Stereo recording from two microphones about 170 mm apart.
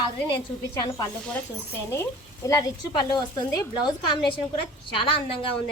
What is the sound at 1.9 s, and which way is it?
A woman's voice, 15° left (ahead or behind).